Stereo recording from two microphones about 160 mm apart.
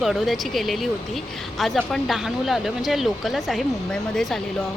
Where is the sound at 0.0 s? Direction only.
Centre (ahead or behind).